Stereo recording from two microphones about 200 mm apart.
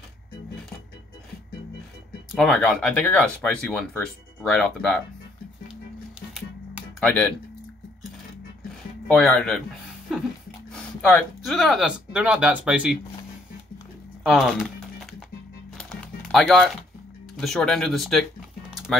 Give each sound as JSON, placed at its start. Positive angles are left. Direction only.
{"t": 2.3, "sound": "speech", "side_deg": 5}
{"t": 7.0, "sound": "speech", "side_deg": 5}
{"t": 9.0, "sound": "speech", "side_deg": 5}
{"t": 10.7, "sound": "speech", "side_deg": 5}
{"t": 14.2, "sound": "speech", "side_deg": 0}
{"t": 15.8, "sound": "music", "side_deg": 5}
{"t": 17.4, "sound": "speech", "side_deg": 0}